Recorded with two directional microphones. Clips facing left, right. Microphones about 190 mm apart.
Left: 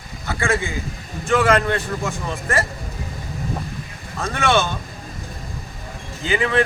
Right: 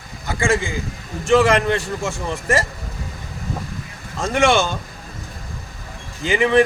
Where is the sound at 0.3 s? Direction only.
15° right (ahead or behind).